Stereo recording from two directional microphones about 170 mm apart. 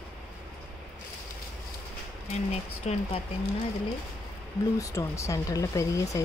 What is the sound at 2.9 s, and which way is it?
Speech, 40° left (ahead or behind).